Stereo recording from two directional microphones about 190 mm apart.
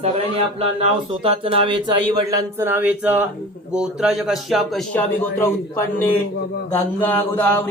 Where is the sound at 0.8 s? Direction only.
30° right (ahead or behind).